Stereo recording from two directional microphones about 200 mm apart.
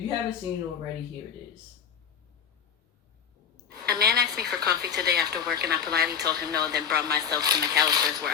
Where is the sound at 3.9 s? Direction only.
50° right (ahead or behind).